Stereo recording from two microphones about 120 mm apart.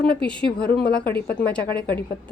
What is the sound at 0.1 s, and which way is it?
A woman's voice, 10° left (ahead or behind).